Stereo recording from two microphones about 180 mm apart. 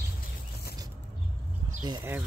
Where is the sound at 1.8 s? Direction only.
25° right (ahead or behind).